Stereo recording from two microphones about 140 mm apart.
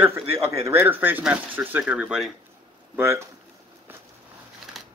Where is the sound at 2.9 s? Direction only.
20° right (ahead or behind).